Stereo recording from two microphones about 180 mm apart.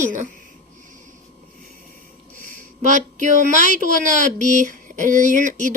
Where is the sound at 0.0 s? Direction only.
45° right (ahead or behind).